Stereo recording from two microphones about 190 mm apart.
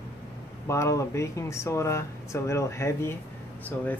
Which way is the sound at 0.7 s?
15° left (ahead or behind).